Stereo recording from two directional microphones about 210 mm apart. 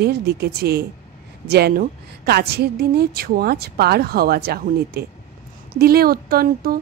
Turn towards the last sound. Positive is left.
turn(degrees=-45)  # may be behind; listen again after turning